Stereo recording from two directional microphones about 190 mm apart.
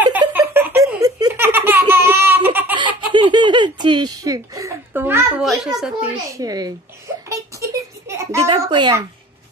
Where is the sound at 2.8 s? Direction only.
25° right (ahead or behind).